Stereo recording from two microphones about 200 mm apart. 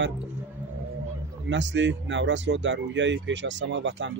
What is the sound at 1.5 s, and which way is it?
Speech, 65° right (ahead or behind).